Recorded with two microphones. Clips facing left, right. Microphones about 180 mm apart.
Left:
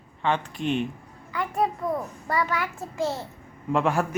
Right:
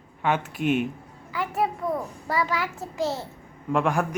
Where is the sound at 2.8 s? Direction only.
20° right (ahead or behind).